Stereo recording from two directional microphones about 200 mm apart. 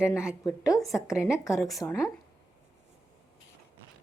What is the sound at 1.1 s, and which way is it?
Speech, 5° right (ahead or behind).